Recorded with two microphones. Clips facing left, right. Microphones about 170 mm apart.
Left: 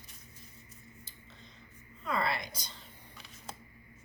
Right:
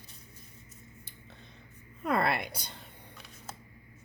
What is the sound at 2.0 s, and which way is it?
Speech, 60° right (ahead or behind).